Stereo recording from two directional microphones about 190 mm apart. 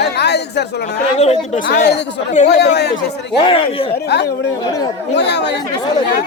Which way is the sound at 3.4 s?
30° left (ahead or behind).